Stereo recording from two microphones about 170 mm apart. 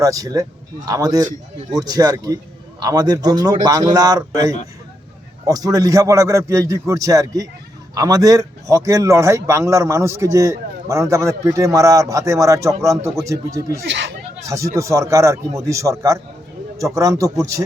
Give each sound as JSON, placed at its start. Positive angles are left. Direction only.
{"t": 0.0, "sound": "a man's voice", "side_deg": -20}
{"t": 13.8, "sound": "speech", "side_deg": -90}
{"t": 14.4, "sound": "a man's voice", "side_deg": -15}